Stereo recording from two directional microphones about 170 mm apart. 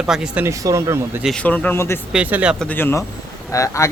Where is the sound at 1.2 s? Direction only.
5° left (ahead or behind).